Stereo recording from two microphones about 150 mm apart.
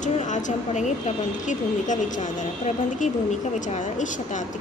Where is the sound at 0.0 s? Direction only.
55° left (ahead or behind).